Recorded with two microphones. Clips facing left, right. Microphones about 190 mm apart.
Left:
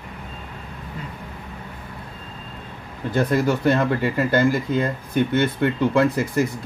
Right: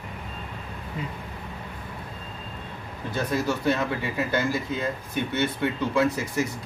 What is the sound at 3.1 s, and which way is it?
Speech, 55° left (ahead or behind).